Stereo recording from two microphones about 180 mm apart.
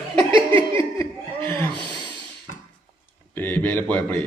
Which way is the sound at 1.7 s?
25° right (ahead or behind).